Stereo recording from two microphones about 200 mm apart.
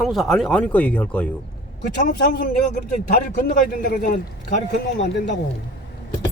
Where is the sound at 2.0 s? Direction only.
40° left (ahead or behind).